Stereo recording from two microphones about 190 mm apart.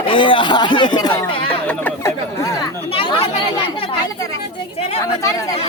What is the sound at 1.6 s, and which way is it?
Speech, 10° left (ahead or behind).